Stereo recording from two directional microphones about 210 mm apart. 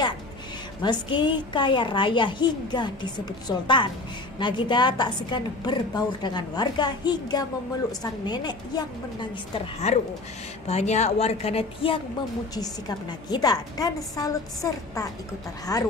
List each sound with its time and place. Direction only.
0.8 s a woman's voice: 20° left (ahead or behind)